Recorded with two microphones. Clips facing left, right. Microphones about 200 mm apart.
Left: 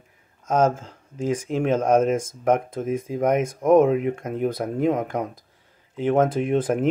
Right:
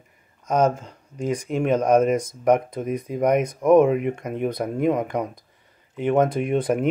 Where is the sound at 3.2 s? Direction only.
45° left (ahead or behind).